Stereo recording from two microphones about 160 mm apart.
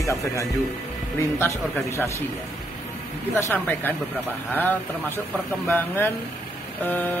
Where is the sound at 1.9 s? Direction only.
20° left (ahead or behind).